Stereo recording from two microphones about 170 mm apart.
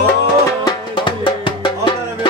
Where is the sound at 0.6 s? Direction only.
30° left (ahead or behind).